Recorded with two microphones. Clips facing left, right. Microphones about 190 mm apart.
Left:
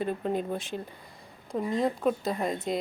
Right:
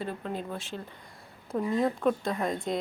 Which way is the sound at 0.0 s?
20° left (ahead or behind).